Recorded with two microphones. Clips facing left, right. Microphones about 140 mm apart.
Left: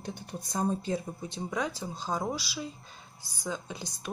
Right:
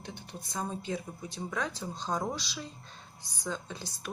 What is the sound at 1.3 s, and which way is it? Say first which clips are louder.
Speech: left 2 dB; 15° left (ahead or behind).